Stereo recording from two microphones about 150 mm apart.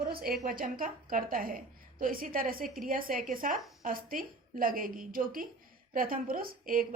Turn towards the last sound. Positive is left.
turn(degrees=-70)  # may be behind; listen again after turning